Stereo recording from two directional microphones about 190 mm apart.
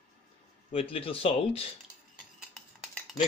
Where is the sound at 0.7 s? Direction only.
30° left (ahead or behind).